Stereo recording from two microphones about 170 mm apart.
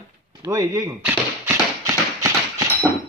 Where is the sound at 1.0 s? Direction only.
10° right (ahead or behind).